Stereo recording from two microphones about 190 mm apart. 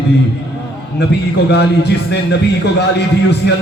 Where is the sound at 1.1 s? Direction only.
60° left (ahead or behind).